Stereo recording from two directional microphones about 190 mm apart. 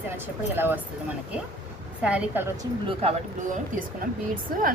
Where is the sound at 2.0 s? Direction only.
5° right (ahead or behind).